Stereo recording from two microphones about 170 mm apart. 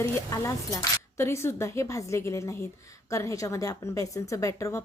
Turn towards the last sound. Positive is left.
turn(degrees=15)  # may be behind; listen again after turning